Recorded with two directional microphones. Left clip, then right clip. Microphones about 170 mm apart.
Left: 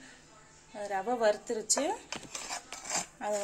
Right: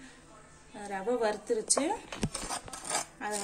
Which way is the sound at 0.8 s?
40° left (ahead or behind).